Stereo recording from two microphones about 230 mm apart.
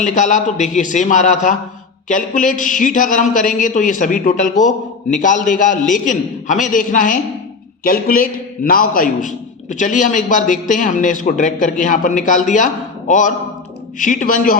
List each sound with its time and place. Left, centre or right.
0.0 s a man's voice: left